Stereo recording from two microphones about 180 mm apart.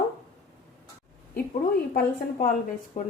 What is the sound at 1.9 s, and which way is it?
A woman's voice, 50° left (ahead or behind).